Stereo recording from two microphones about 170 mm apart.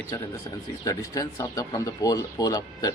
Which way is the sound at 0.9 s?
20° left (ahead or behind).